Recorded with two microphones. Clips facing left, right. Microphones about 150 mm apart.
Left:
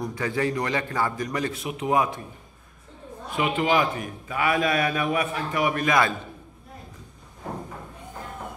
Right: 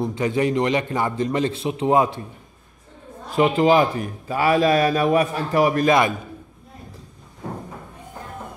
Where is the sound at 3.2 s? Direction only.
35° right (ahead or behind).